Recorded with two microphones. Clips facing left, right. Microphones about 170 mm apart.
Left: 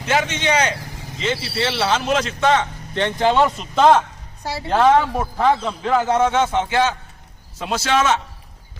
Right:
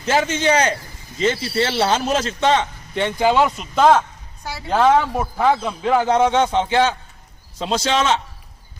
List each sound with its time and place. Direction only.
0.0 s a man's voice: 35° right (ahead or behind)
3.0 s speech: 5° right (ahead or behind)
4.4 s speech: 30° left (ahead or behind)
4.7 s a man's voice: centre (ahead or behind); by 8.2 s 25° right (ahead or behind)